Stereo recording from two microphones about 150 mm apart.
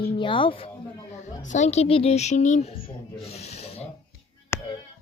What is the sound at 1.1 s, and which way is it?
A woman's voice, 50° left (ahead or behind).